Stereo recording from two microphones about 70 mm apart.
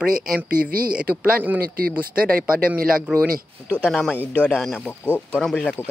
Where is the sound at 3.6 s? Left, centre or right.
Centre.